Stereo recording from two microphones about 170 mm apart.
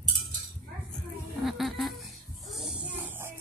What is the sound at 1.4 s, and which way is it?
Music, centre (ahead or behind).